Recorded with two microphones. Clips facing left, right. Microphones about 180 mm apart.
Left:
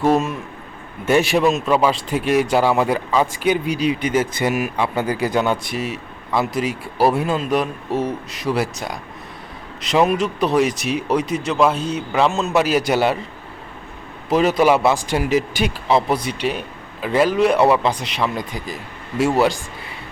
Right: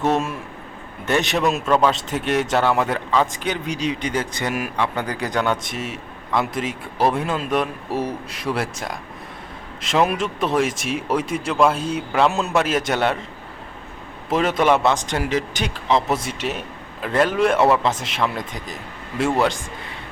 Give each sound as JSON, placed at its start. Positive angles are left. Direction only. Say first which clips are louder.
{"t": 0.0, "sound": "a man's voice", "louder": "left 3 dB", "side_deg": 5}
{"t": 14.3, "sound": "a man's voice", "louder": "left 3 dB", "side_deg": 5}